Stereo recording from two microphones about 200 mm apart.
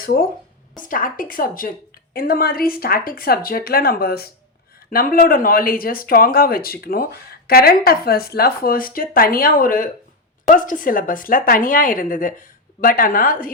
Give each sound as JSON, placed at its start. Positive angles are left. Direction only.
{"t": 0.0, "sound": "a woman's voice", "side_deg": 45}